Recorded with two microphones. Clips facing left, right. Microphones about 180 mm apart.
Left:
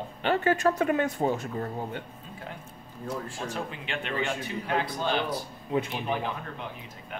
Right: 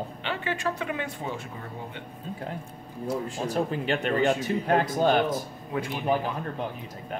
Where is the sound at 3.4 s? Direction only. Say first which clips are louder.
Right 7 dB; 40° right (ahead or behind).